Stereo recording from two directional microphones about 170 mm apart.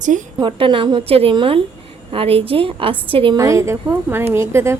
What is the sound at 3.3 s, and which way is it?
A woman's voice, 20° right (ahead or behind).